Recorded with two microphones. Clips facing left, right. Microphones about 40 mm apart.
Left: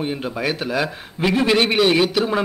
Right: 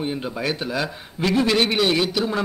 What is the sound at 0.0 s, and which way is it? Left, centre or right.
A man's voice, centre.